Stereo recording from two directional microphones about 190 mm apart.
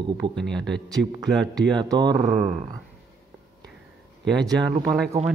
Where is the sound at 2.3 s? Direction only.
5° right (ahead or behind).